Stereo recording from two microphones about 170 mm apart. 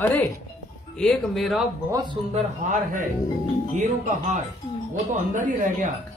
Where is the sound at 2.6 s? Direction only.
50° right (ahead or behind).